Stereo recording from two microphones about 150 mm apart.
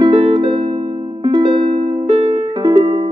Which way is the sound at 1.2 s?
30° right (ahead or behind).